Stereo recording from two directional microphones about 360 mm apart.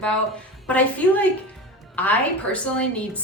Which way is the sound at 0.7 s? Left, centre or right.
Centre.